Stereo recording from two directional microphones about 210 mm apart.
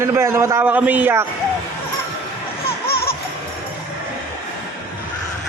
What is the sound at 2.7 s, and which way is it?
Music, 45° left (ahead or behind).